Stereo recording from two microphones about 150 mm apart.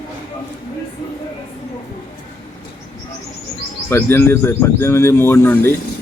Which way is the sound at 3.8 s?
15° left (ahead or behind).